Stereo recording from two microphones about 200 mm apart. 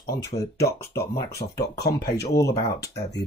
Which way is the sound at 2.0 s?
55° left (ahead or behind).